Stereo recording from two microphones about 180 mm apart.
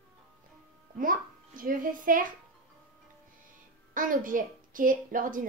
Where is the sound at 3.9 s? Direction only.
50° right (ahead or behind).